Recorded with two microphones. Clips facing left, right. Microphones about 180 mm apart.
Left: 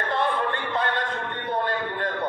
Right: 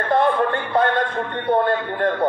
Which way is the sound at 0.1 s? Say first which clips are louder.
Right 8 dB; 45° right (ahead or behind).